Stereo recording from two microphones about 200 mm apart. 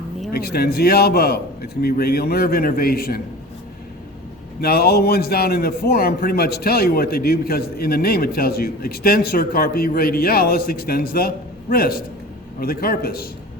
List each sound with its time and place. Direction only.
0.3 s a man's voice: 50° left (ahead or behind)
4.6 s a man's voice: 50° left (ahead or behind)